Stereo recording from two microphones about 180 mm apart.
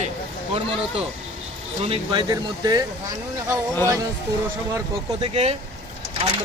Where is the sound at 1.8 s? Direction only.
35° right (ahead or behind).